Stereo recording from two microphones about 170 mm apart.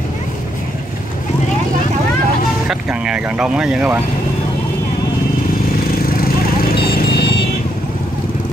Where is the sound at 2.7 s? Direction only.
5° right (ahead or behind).